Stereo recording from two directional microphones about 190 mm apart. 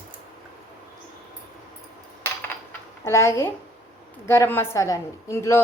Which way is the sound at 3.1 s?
15° left (ahead or behind).